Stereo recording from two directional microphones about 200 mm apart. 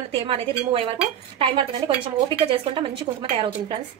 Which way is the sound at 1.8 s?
20° right (ahead or behind).